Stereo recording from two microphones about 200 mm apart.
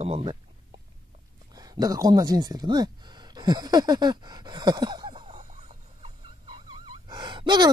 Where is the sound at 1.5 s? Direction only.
20° right (ahead or behind).